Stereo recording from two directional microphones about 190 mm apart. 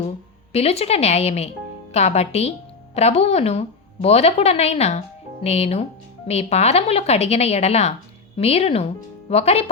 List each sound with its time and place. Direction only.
0.5 s a woman's voice: 35° left (ahead or behind)